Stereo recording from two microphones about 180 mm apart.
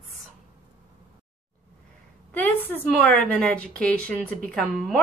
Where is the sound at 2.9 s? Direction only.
5° left (ahead or behind).